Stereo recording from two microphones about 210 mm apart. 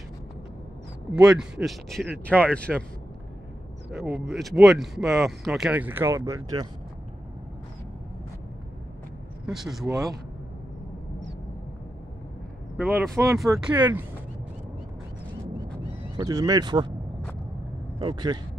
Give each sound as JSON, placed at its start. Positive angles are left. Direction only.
{"t": 1.1, "sound": "speech", "side_deg": -5}
{"t": 3.9, "sound": "speech", "side_deg": -5}
{"t": 9.5, "sound": "speech", "side_deg": 0}
{"t": 12.7, "sound": "speech", "side_deg": -5}
{"t": 16.2, "sound": "speech", "side_deg": -15}
{"t": 17.9, "sound": "speech", "side_deg": -20}